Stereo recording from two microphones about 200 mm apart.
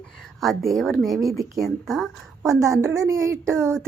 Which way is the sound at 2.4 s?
15° right (ahead or behind).